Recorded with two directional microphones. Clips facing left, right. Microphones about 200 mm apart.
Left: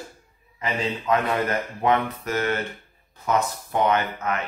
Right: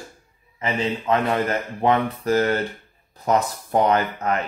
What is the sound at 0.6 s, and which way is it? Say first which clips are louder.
Speech: right 3 dB; 30° right (ahead or behind).